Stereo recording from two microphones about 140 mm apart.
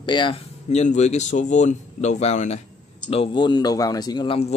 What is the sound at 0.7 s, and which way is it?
Speech, 50° left (ahead or behind).